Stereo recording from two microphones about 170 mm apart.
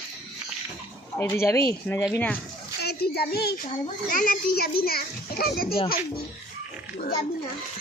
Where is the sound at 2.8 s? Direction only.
70° left (ahead or behind).